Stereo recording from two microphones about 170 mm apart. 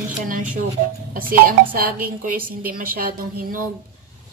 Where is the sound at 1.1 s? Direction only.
55° right (ahead or behind).